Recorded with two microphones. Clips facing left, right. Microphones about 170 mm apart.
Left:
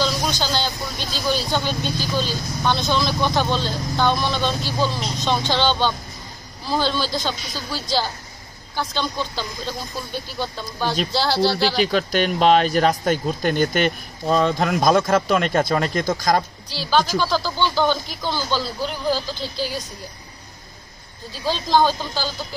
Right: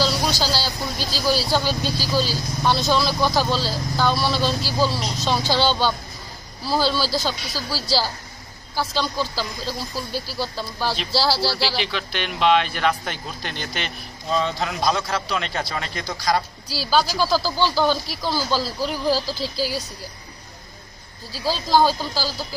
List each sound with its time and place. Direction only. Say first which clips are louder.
0.0 s speech: right 1 dB; 5° right (ahead or behind)
6.7 s speech: right 1 dB; 5° right (ahead or behind)
11.6 s speech: left 6 dB; 45° left (ahead or behind)
16.6 s speech: left 1 dB; 10° right (ahead or behind)
21.5 s speech: even; 5° right (ahead or behind)